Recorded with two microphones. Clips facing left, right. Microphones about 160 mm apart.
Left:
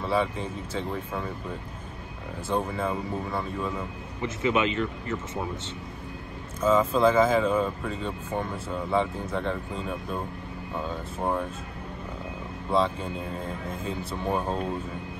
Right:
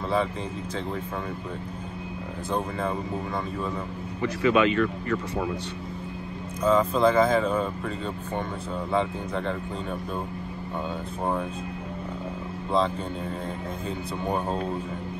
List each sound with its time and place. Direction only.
0.0 s speech: 5° left (ahead or behind)
2.5 s speech: 5° left (ahead or behind)
4.2 s speech: 20° left (ahead or behind)
6.6 s speech: 5° left (ahead or behind)
11.1 s speech: centre (ahead or behind)
13.8 s speech: centre (ahead or behind)